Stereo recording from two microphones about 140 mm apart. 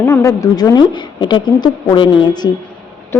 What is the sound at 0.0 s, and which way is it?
Speech, 20° left (ahead or behind).